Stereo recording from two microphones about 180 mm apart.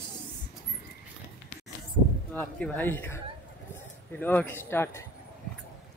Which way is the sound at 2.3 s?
10° left (ahead or behind).